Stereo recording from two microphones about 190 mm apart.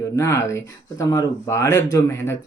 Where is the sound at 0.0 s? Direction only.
15° left (ahead or behind).